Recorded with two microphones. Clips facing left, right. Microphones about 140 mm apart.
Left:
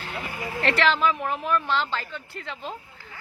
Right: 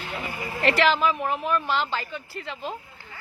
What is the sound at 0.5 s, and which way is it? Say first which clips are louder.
A woman's voice: right 2 dB; 5° right (ahead or behind).